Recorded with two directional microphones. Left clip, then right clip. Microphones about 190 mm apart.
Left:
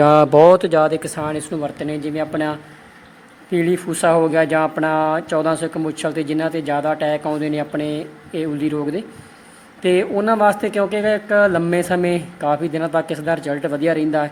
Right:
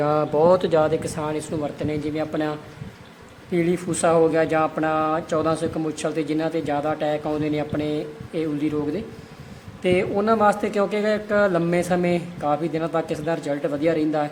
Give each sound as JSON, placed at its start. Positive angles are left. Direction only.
{"t": 0.0, "sound": "speech", "side_deg": 30}